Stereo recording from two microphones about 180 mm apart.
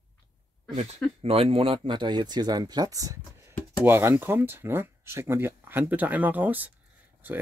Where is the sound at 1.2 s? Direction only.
30° right (ahead or behind).